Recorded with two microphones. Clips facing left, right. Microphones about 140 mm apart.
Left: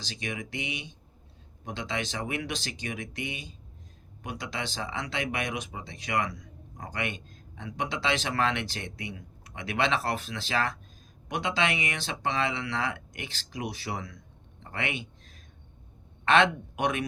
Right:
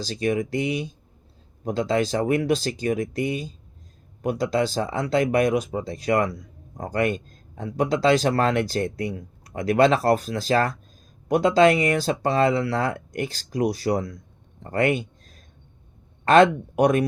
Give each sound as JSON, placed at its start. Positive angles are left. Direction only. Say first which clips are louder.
{"t": 0.0, "sound": "speech", "louder": "right 13 dB", "side_deg": -40}
{"t": 14.6, "sound": "a sound", "louder": "right 12 dB", "side_deg": -45}
{"t": 16.2, "sound": "speech", "louder": "right 8 dB", "side_deg": -40}